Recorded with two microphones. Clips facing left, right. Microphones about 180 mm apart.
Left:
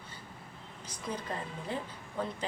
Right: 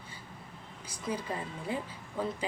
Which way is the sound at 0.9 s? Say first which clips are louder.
Right 3 dB; 10° right (ahead or behind).